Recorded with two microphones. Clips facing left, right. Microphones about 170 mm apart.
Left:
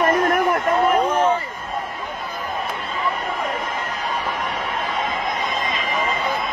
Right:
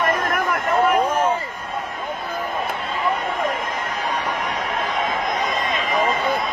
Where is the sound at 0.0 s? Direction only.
30° left (ahead or behind).